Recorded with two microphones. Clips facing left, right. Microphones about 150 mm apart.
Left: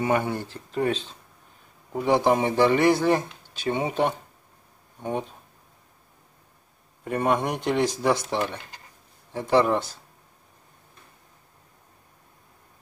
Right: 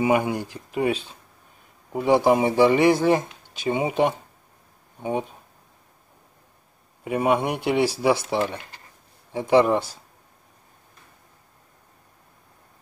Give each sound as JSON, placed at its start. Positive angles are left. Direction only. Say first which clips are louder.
{"t": 0.0, "sound": "speech", "louder": "right 3 dB", "side_deg": -10}
{"t": 7.1, "sound": "speech", "louder": "right 2 dB", "side_deg": -10}